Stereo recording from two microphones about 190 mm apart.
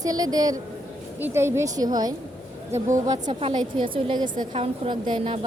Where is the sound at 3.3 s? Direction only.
30° right (ahead or behind).